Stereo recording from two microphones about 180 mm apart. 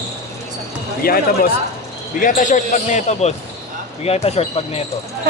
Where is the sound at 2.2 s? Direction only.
45° left (ahead or behind).